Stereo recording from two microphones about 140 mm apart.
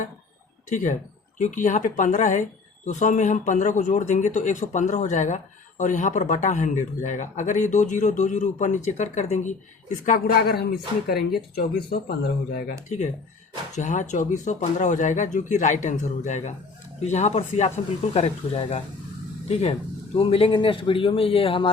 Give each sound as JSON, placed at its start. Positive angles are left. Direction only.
{"t": 0.7, "sound": "speech", "side_deg": 65}
{"t": 13.7, "sound": "speech", "side_deg": 60}
{"t": 20.1, "sound": "a man's voice", "side_deg": 40}